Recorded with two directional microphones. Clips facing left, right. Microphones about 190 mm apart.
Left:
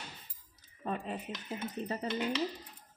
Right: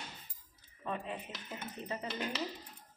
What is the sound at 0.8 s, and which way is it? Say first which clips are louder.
Dishes: left 3 dB; 40° left (ahead or behind).